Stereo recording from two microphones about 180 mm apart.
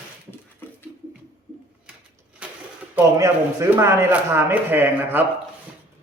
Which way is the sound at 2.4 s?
5° right (ahead or behind).